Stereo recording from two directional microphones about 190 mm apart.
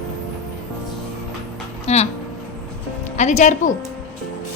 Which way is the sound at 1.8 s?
35° left (ahead or behind).